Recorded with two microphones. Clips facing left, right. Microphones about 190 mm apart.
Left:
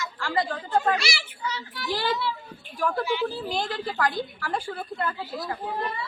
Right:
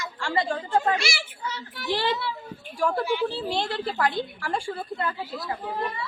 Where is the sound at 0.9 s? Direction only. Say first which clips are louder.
Right 1 dB; 50° right (ahead or behind).